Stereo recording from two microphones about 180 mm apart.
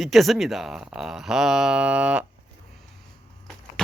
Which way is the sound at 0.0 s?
Centre (ahead or behind).